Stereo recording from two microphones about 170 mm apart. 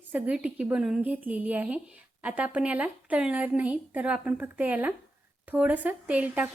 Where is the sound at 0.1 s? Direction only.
10° right (ahead or behind).